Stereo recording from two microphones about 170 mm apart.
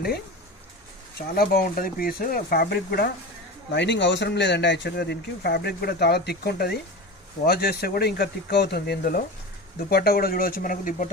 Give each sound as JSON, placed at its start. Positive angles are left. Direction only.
{"t": 1.4, "sound": "speech", "side_deg": 55}
{"t": 3.7, "sound": "speech", "side_deg": 90}